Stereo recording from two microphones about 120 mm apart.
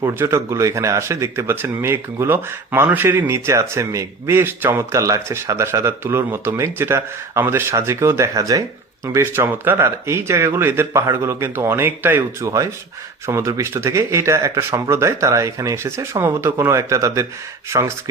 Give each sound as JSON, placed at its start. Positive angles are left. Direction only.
{"t": 0.0, "sound": "speech", "side_deg": -25}